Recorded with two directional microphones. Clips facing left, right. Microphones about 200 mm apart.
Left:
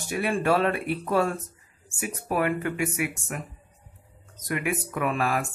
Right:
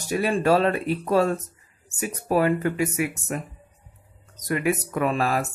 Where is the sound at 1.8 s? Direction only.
35° right (ahead or behind).